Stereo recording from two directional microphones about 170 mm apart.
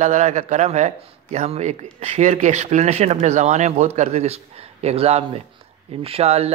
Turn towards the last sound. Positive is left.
turn(degrees=-35)  # may be behind; listen again after turning